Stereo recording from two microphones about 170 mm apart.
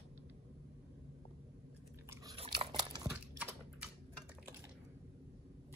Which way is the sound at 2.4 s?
30° right (ahead or behind).